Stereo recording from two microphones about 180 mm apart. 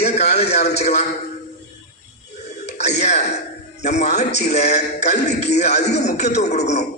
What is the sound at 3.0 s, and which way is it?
A man's voice, 40° left (ahead or behind).